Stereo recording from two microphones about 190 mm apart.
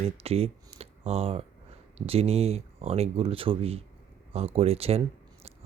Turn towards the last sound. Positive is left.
turn(degrees=-30)  # may be behind; listen again after turning